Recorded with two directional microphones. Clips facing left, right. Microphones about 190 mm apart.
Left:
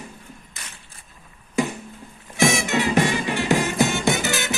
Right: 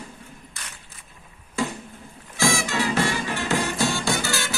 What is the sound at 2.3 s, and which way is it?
Music, 20° left (ahead or behind).